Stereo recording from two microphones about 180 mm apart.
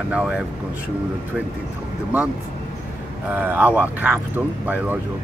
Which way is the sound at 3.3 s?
10° right (ahead or behind).